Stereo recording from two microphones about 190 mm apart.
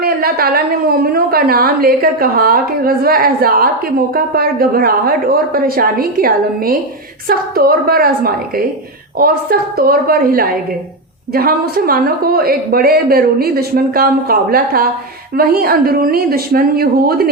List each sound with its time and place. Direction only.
0.0 s a woman's voice: 50° right (ahead or behind)